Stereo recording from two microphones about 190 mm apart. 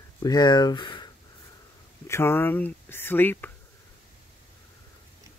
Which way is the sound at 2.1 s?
10° left (ahead or behind).